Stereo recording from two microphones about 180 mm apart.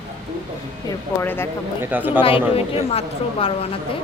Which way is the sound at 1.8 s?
10° right (ahead or behind).